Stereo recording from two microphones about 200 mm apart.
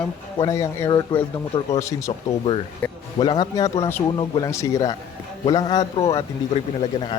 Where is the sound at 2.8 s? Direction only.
20° left (ahead or behind).